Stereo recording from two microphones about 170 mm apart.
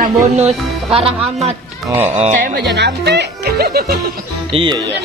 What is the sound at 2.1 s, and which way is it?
Speech, 45° right (ahead or behind).